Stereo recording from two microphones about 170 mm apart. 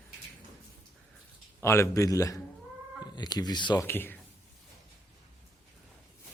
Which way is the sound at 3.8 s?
10° left (ahead or behind).